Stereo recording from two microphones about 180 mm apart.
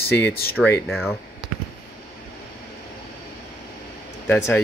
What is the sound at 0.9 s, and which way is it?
Speech, centre (ahead or behind).